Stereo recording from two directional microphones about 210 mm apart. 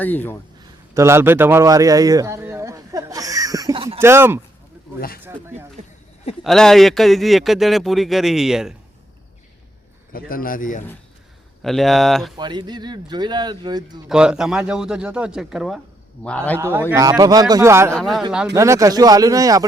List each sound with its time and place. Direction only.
0.0 s a man's voice: 10° left (ahead or behind)
0.9 s a sound: 10° right (ahead or behind)
4.0 s speech: 10° right (ahead or behind)
4.9 s speech: 45° left (ahead or behind)
5.2 s speech: 10° right (ahead or behind)
6.4 s speech: centre (ahead or behind)
10.1 s a man's voice: 45° left (ahead or behind)
11.6 s speech: centre (ahead or behind)
12.4 s speech: 20° right (ahead or behind)
14.1 s a man's voice: 5° right (ahead or behind)
16.6 s speech: 10° right (ahead or behind)
17.9 s speech: centre (ahead or behind)
18.5 s speech: 15° right (ahead or behind)